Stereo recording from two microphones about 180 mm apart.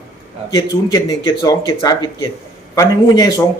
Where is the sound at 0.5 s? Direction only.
20° left (ahead or behind).